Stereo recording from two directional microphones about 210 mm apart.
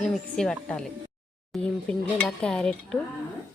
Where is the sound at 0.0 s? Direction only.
5° left (ahead or behind).